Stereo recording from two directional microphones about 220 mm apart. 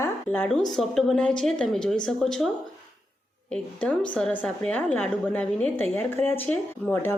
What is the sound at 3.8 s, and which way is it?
A woman's voice, 5° left (ahead or behind).